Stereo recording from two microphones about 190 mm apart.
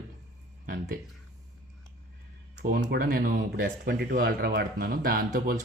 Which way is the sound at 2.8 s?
55° right (ahead or behind).